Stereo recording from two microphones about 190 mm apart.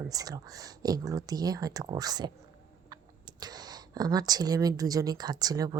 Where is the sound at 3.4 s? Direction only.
20° right (ahead or behind).